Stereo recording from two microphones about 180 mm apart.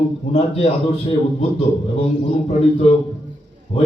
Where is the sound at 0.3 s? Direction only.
35° left (ahead or behind).